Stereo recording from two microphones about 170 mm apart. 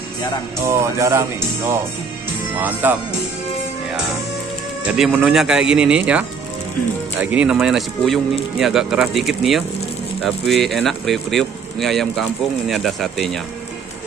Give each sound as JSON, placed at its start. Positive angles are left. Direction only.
{"t": 0.6, "sound": "speech", "side_deg": -15}
{"t": 4.8, "sound": "speech", "side_deg": 0}